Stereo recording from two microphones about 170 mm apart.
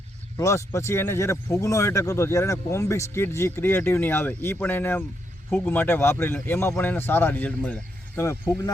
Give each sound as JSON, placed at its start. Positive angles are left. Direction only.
{"t": 0.3, "sound": "speech", "side_deg": 15}